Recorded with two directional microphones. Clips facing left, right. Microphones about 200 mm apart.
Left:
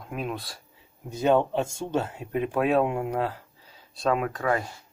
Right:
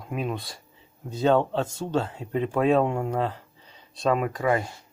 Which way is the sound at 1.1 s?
15° left (ahead or behind).